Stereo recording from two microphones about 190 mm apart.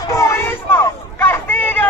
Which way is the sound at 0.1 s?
15° left (ahead or behind).